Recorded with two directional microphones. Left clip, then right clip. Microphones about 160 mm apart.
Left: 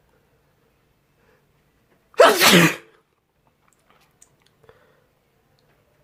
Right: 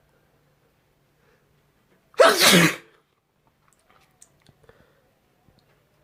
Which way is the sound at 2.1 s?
15° left (ahead or behind).